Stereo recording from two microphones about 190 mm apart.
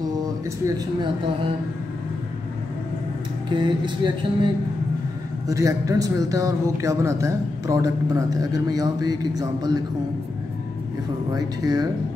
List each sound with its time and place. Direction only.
3.4 s music: 25° right (ahead or behind)
5.5 s speech: 15° right (ahead or behind)
11.3 s music: 20° right (ahead or behind)